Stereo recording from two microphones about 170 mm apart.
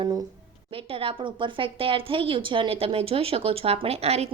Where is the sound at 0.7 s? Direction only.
35° right (ahead or behind).